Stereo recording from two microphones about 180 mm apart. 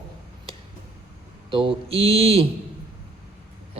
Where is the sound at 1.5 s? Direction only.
30° right (ahead or behind).